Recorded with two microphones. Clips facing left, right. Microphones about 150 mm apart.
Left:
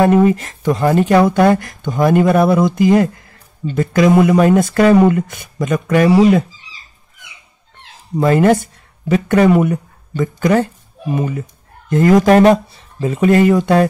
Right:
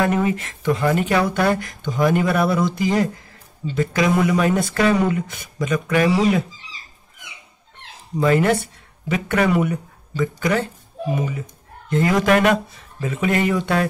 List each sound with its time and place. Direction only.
0.0 s speech: 40° left (ahead or behind)
8.2 s speech: 40° left (ahead or behind)